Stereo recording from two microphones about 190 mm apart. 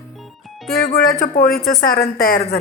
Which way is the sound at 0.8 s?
50° left (ahead or behind).